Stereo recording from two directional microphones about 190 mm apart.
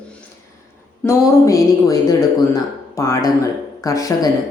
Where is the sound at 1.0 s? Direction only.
15° left (ahead or behind).